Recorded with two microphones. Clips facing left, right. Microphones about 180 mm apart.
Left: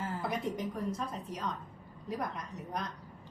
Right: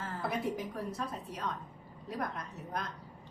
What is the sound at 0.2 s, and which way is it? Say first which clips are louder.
A woman's voice: right 3 dB; centre (ahead or behind).